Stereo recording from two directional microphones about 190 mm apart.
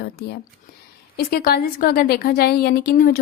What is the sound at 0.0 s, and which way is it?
A woman's voice, 55° left (ahead or behind).